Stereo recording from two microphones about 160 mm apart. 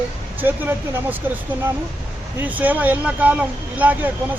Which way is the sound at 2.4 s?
10° right (ahead or behind).